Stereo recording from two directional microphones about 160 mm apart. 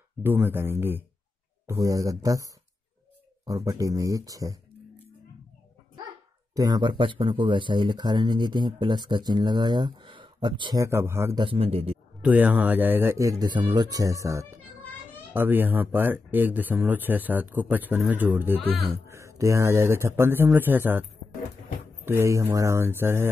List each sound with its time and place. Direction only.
0.2 s speech: 15° right (ahead or behind)
6.5 s speech: 25° right (ahead or behind)
10.8 s speech: 15° right (ahead or behind)
11.3 s a man's voice: 35° right (ahead or behind)
12.2 s speech: 10° right (ahead or behind)
22.0 s speech: 15° right (ahead or behind)